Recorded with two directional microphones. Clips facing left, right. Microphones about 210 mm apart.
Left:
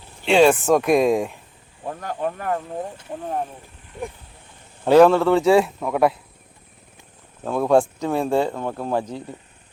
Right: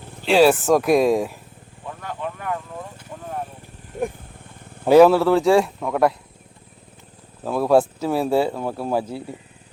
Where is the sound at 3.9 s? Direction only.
45° right (ahead or behind).